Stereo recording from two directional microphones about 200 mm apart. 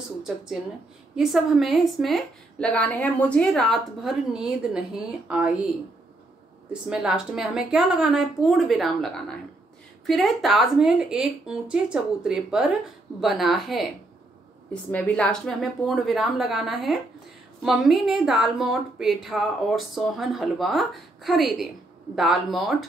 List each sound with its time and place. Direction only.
1.1 s a woman's voice: centre (ahead or behind)
6.7 s a woman's voice: 5° right (ahead or behind)